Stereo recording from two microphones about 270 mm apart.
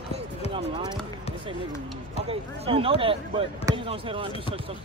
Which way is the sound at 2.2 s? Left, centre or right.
Right.